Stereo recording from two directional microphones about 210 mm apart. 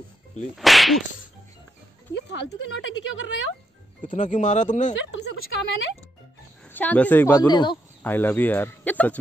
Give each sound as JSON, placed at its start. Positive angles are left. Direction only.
{"t": 0.6, "sound": "speech", "side_deg": 0}
{"t": 2.7, "sound": "speech", "side_deg": 65}
{"t": 4.0, "sound": "speech", "side_deg": 35}
{"t": 5.1, "sound": "a woman's voice", "side_deg": 55}
{"t": 6.7, "sound": "speech", "side_deg": 5}
{"t": 8.0, "sound": "speech", "side_deg": 10}